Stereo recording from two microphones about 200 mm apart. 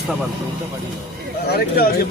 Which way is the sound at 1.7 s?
50° left (ahead or behind).